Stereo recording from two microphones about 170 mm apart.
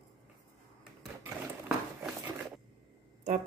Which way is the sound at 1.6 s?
10° right (ahead or behind).